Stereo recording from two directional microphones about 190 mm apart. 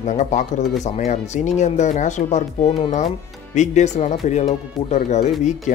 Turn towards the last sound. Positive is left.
turn(degrees=40)  # may be behind; listen again after turning